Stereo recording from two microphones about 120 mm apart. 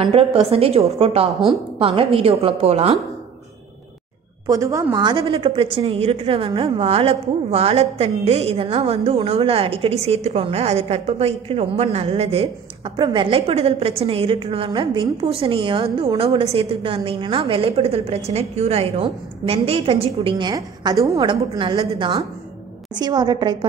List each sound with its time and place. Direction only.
0.0 s a woman's voice: 55° right (ahead or behind)
4.5 s a woman's voice: 25° right (ahead or behind)
5.1 s a woman's voice: 50° right (ahead or behind)
12.9 s a woman's voice: 45° right (ahead or behind)
20.3 s a woman's voice: 35° right (ahead or behind)
21.2 s a woman's voice: 45° right (ahead or behind)